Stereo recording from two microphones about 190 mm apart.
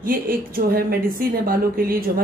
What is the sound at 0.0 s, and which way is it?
A woman's voice, 50° right (ahead or behind).